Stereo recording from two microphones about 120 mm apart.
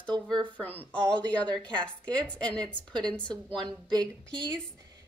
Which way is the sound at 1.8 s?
10° left (ahead or behind).